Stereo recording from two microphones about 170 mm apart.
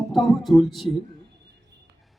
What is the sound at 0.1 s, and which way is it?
Speech, centre (ahead or behind).